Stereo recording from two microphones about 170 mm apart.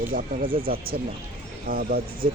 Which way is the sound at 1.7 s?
60° right (ahead or behind).